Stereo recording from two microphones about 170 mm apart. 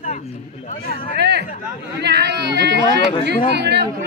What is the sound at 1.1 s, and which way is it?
Chatter, 80° right.